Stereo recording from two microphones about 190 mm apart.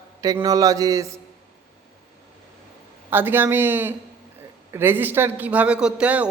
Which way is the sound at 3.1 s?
10° right (ahead or behind).